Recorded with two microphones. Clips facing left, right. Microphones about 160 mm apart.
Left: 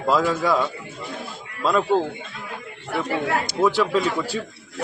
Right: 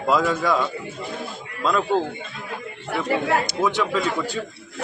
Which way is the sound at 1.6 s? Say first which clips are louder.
Left 2 dB; 5° left (ahead or behind).